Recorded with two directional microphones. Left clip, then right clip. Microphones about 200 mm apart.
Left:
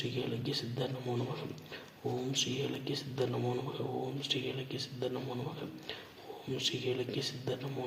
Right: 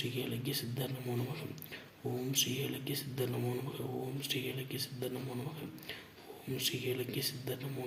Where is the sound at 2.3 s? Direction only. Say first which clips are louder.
Right 1 dB; 40° right (ahead or behind).